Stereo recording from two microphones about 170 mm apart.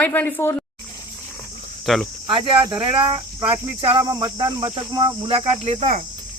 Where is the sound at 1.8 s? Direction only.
Centre (ahead or behind).